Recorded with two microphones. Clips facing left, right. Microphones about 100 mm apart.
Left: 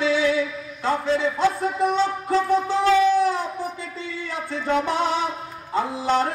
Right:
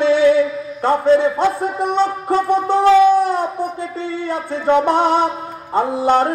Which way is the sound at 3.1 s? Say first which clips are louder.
Right 5 dB; 55° right (ahead or behind).